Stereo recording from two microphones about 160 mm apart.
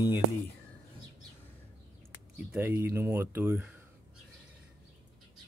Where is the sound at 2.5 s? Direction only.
15° right (ahead or behind).